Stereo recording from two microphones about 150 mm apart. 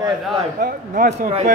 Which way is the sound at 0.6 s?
75° right (ahead or behind).